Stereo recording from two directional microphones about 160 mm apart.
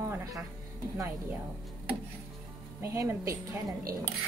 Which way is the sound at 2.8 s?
15° right (ahead or behind).